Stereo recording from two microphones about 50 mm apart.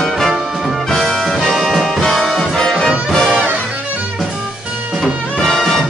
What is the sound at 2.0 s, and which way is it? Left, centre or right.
Brass instrument, centre.